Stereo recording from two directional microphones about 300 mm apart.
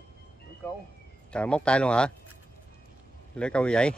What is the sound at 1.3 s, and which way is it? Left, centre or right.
Speech, centre.